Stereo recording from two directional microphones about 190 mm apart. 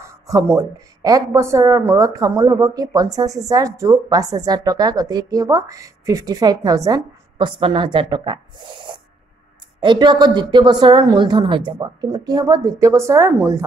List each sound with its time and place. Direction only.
0.0 s a woman's voice: 15° right (ahead or behind)
9.8 s a woman's voice: 25° right (ahead or behind)